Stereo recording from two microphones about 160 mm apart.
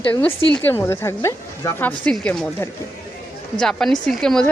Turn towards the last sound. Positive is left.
turn(degrees=5)  # may be behind; listen again after turning